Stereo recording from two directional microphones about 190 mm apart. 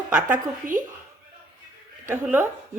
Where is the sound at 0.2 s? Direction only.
45° right (ahead or behind).